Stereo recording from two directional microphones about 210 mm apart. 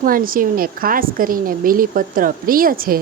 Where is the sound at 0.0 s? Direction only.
40° right (ahead or behind).